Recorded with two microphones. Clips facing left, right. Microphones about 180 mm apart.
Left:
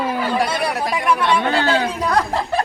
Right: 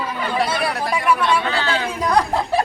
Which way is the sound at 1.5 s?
50° left (ahead or behind).